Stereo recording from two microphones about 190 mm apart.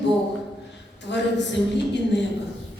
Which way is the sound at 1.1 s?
65° left (ahead or behind).